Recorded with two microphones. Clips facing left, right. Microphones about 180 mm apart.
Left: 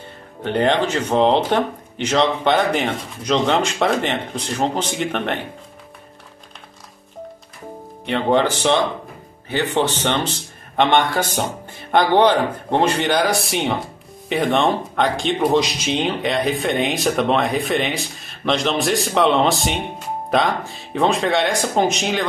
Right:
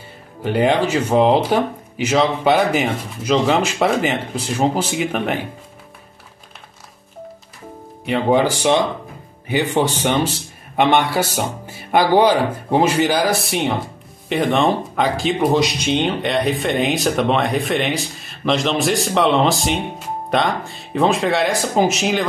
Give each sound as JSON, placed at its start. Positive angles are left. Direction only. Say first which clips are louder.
{"t": 0.4, "sound": "speech", "louder": "right 1 dB", "side_deg": -5}
{"t": 8.0, "sound": "speech", "louder": "right 2 dB", "side_deg": -5}